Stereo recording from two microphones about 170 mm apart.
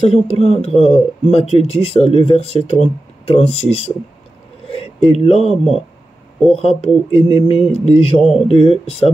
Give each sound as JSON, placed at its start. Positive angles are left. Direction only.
{"t": 0.1, "sound": "speech", "side_deg": 35}
{"t": 5.4, "sound": "speech", "side_deg": 0}
{"t": 6.8, "sound": "speech", "side_deg": 35}
{"t": 8.2, "sound": "speech", "side_deg": 0}
{"t": 8.6, "sound": "speech", "side_deg": 35}